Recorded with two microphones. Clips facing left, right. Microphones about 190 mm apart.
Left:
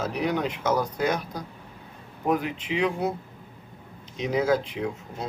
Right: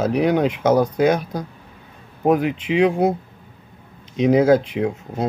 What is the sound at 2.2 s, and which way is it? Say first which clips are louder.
Speech: right 8 dB; 75° right (ahead or behind).